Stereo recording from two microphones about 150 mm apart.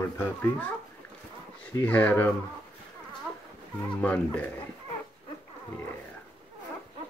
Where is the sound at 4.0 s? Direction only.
10° left (ahead or behind).